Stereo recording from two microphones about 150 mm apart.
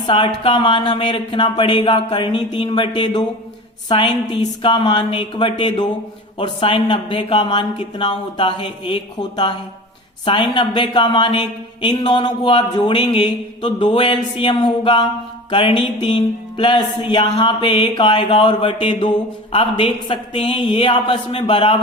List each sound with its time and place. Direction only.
0.1 s music: 35° left (ahead or behind)